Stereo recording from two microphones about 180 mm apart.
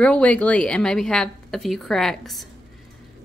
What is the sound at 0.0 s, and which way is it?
A woman's voice, 5° left (ahead or behind).